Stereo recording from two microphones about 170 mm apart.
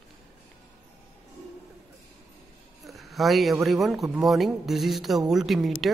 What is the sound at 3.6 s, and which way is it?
Speech, centre (ahead or behind).